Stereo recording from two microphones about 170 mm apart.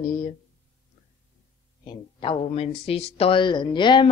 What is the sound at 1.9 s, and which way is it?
Speech, 30° left (ahead or behind).